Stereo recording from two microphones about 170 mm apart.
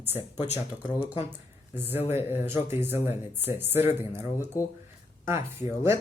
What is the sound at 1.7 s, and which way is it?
Speech, 10° right (ahead or behind).